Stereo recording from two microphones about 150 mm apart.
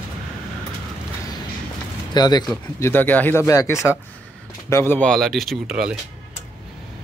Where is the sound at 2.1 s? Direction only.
25° left (ahead or behind).